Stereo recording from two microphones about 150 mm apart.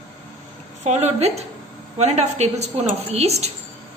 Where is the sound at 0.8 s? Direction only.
45° right (ahead or behind).